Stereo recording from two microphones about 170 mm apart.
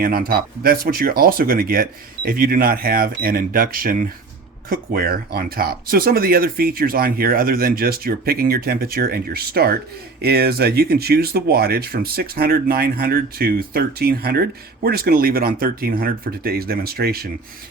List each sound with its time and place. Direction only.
0.0 s speech: 60° right (ahead or behind)